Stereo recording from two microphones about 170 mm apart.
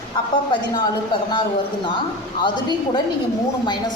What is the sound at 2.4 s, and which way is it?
A woman's voice, 25° left (ahead or behind).